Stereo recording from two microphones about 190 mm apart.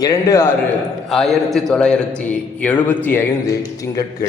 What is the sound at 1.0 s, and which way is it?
A man's voice, centre (ahead or behind).